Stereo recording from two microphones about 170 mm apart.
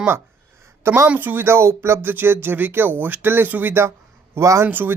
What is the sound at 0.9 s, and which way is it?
Speech, 10° right (ahead or behind).